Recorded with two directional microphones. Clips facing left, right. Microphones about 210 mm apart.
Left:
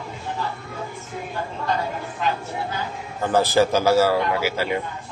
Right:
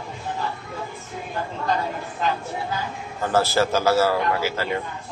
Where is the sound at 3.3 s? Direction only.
15° left (ahead or behind).